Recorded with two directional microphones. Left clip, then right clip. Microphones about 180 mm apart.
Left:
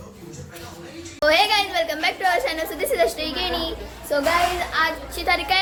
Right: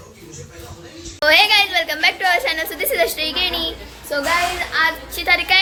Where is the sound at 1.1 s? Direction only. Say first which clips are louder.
Right 5 dB; 5° left (ahead or behind).